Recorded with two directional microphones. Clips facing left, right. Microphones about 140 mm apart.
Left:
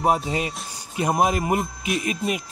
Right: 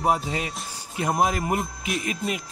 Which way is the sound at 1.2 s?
25° left (ahead or behind).